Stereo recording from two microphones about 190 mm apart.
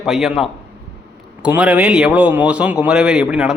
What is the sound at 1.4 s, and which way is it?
Speech, 5° right (ahead or behind).